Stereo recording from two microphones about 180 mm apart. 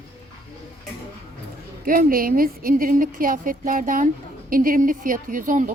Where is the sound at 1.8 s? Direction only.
50° right (ahead or behind).